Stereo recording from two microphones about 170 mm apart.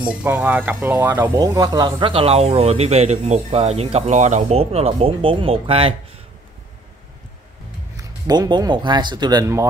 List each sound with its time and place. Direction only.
0.1 s speech: 10° right (ahead or behind); by 5.9 s 35° right (ahead or behind)
8.0 s speech: 25° right (ahead or behind)